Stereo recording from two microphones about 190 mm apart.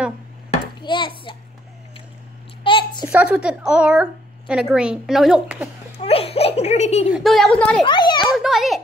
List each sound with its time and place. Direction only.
0.5 s hands: 25° left (ahead or behind)
2.6 s a sound: 25° left (ahead or behind)
3.1 s a woman's voice: 5° right (ahead or behind)
5.9 s speech: 30° left (ahead or behind)
7.2 s a woman's voice: centre (ahead or behind)
7.8 s a child's voice: 25° left (ahead or behind)
8.4 s a woman's voice: centre (ahead or behind)